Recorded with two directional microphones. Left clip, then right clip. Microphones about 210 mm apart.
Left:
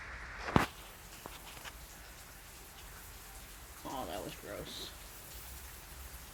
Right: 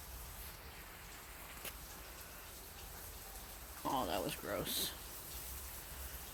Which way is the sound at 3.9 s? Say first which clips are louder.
Right 3 dB; 25° right (ahead or behind).